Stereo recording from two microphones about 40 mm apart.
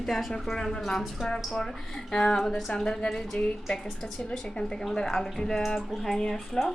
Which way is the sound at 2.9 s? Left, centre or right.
Left.